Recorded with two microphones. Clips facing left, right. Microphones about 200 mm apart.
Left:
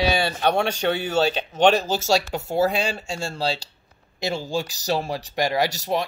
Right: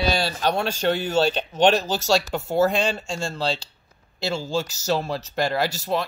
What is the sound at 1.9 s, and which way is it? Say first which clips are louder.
Speech: even; 45° left (ahead or behind).